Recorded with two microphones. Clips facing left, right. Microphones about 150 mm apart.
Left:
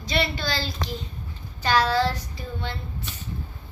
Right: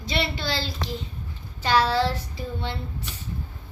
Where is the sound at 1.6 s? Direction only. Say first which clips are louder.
Even; 25° right (ahead or behind).